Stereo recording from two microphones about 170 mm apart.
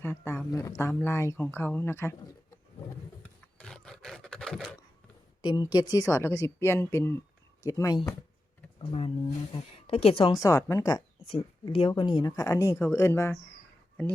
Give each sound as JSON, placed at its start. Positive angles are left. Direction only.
{"t": 0.0, "sound": "speech", "side_deg": 15}
{"t": 3.6, "sound": "roar", "side_deg": 5}
{"t": 5.4, "sound": "speech", "side_deg": 25}
{"t": 8.8, "sound": "speech", "side_deg": 30}
{"t": 10.4, "sound": "speech", "side_deg": 20}
{"t": 11.3, "sound": "speech", "side_deg": 30}